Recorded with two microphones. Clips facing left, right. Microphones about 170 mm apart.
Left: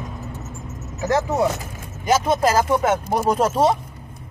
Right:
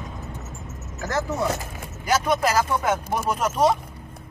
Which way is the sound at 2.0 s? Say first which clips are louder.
Left 4 dB; 25° left (ahead or behind).